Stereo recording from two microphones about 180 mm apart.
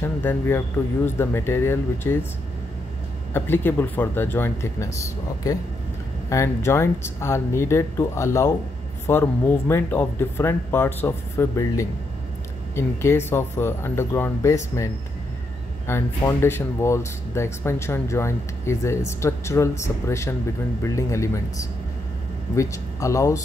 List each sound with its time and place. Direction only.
0.0 s speech: 10° left (ahead or behind)
3.3 s speech: 10° left (ahead or behind)
15.9 s speech: 15° left (ahead or behind)